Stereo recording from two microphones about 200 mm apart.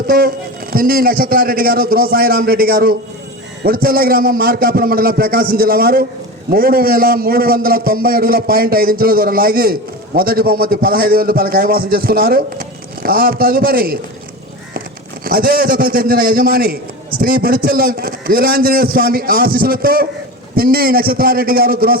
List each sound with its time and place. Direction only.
0.1 s a man's voice: 50° right (ahead or behind)
15.2 s a man's voice: 45° right (ahead or behind)